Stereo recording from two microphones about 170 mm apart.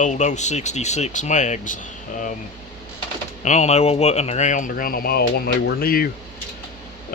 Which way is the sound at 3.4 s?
45° left (ahead or behind).